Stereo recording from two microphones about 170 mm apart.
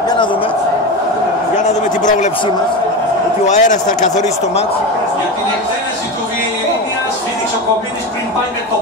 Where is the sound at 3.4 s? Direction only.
45° left (ahead or behind).